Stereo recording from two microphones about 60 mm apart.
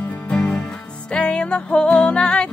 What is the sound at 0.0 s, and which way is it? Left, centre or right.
Music, left.